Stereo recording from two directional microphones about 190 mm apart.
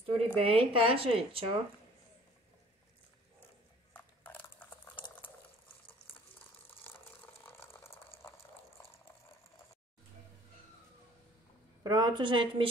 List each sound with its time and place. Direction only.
0.0 s speech: 30° right (ahead or behind)
3.9 s a sound: 10° left (ahead or behind)
7.6 s water: 15° left (ahead or behind)
11.8 s speech: 25° right (ahead or behind)